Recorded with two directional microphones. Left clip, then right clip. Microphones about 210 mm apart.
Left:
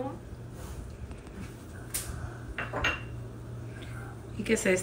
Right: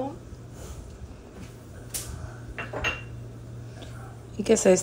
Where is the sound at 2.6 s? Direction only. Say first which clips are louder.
Even; centre (ahead or behind).